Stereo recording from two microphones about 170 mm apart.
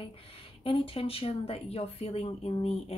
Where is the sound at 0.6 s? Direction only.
30° left (ahead or behind).